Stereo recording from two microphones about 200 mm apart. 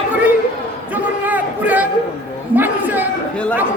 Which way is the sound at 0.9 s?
10° right (ahead or behind).